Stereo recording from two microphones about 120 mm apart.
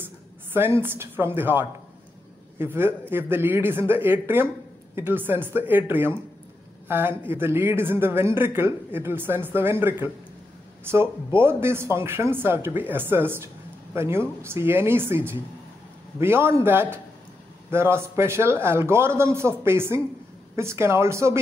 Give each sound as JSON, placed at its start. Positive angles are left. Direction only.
{"t": 0.5, "sound": "speech", "side_deg": -20}